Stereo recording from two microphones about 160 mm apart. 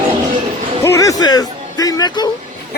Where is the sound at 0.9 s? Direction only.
20° left (ahead or behind).